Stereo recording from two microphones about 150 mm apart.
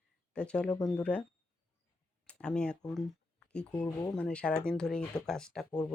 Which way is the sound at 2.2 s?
5° left (ahead or behind).